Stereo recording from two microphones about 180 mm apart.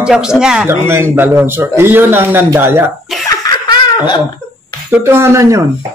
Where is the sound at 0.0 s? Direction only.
5° right (ahead or behind).